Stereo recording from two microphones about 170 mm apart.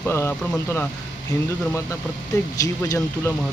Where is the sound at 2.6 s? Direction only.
20° left (ahead or behind).